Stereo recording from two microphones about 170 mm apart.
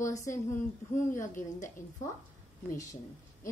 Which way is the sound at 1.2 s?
50° left (ahead or behind).